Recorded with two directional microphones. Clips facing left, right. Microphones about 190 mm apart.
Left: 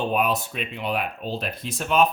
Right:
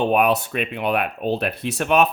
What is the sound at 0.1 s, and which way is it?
Speech, 70° right (ahead or behind).